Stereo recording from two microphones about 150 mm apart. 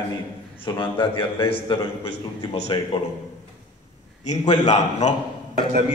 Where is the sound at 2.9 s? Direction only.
35° left (ahead or behind).